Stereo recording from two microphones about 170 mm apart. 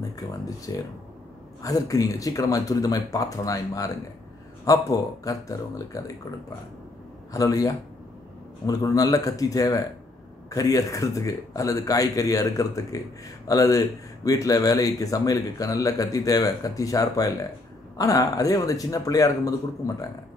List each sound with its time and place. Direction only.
0.1 s speech: 20° left (ahead or behind)
7.3 s speech: 20° left (ahead or behind)